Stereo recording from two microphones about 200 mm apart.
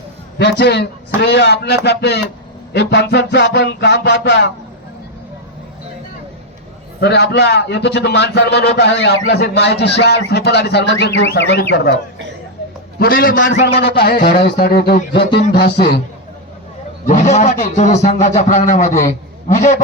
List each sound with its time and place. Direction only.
0.3 s a man's voice: 55° left (ahead or behind)
7.0 s a man's voice: 55° left (ahead or behind)
13.0 s speech: 45° left (ahead or behind)
13.4 s a man's voice: 55° left (ahead or behind)
17.1 s a man's voice: 35° left (ahead or behind)